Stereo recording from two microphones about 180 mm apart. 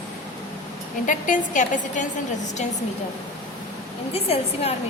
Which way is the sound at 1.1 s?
45° left (ahead or behind).